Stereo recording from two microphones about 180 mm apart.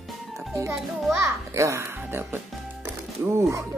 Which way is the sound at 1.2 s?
15° right (ahead or behind).